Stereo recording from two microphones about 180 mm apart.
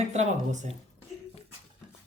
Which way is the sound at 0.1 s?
40° right (ahead or behind).